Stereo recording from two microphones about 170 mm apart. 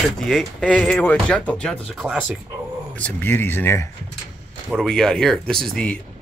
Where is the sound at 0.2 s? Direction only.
Centre (ahead or behind).